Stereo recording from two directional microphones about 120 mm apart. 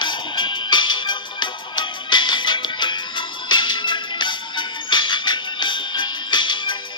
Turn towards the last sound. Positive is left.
turn(degrees=40)  # may be behind; listen again after turning